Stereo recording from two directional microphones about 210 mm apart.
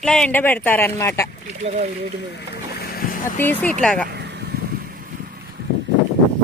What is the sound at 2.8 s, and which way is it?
Boat, 45° left (ahead or behind).